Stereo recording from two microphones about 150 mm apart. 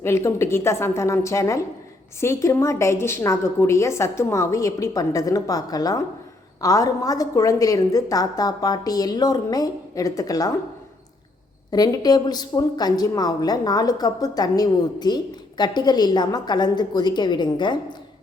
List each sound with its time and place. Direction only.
0.0 s a woman's voice: 15° left (ahead or behind)
11.7 s a woman's voice: 25° left (ahead or behind)